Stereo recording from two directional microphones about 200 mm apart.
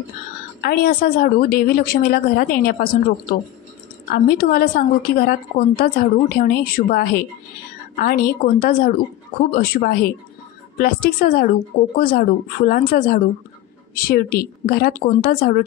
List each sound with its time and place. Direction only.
0.6 s a woman's voice: 50° left (ahead or behind)